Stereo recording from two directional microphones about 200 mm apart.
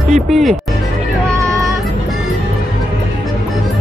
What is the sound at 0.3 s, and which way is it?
Speech, centre (ahead or behind).